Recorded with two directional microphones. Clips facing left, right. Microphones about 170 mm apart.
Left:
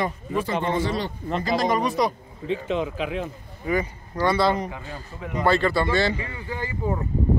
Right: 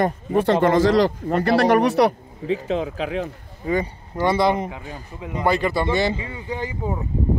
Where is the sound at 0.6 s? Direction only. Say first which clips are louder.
Right 9 dB; 90° right.